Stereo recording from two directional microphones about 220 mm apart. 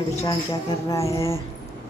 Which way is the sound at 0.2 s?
15° left (ahead or behind).